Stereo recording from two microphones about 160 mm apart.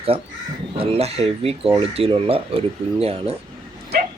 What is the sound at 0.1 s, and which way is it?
Speech, 40° right (ahead or behind).